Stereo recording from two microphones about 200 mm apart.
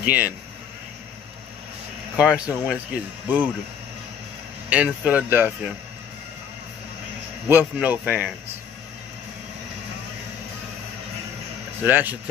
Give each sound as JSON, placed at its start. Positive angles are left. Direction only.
{"t": 0.0, "sound": "speech", "side_deg": -10}
{"t": 2.1, "sound": "speech", "side_deg": -5}
{"t": 4.6, "sound": "speech", "side_deg": -5}
{"t": 7.4, "sound": "speech", "side_deg": -10}
{"t": 11.8, "sound": "speech", "side_deg": -10}